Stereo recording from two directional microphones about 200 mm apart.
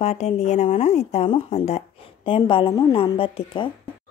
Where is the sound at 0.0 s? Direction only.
35° left (ahead or behind).